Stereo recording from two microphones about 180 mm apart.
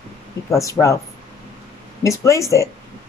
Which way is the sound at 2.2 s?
15° left (ahead or behind).